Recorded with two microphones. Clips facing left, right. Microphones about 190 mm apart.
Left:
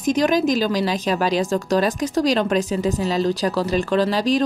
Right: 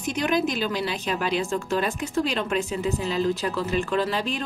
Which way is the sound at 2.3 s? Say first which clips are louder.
Left 7 dB; 40° left (ahead or behind).